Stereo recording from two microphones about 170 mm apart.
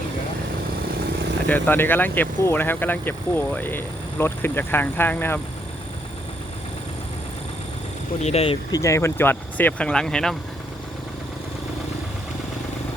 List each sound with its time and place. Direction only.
1.5 s speech: 10° left (ahead or behind)
8.2 s speech: 35° left (ahead or behind)
8.7 s speech: 15° left (ahead or behind)